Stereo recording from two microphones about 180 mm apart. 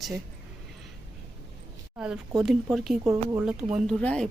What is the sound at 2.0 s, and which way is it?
Speech, 5° right (ahead or behind).